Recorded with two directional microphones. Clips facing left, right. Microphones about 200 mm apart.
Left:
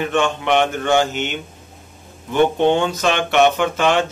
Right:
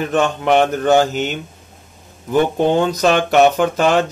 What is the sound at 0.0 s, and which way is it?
Speech, 40° right (ahead or behind).